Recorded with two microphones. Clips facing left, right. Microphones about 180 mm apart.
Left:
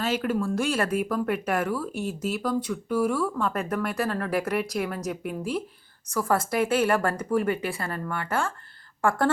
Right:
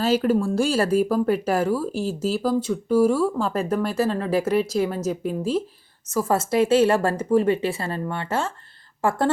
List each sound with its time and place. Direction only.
0.0 s speech: 35° right (ahead or behind)